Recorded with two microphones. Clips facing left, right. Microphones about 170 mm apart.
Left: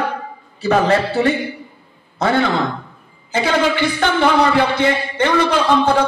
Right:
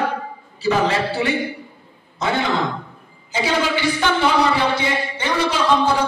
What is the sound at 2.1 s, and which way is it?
A man's voice, 55° left (ahead or behind).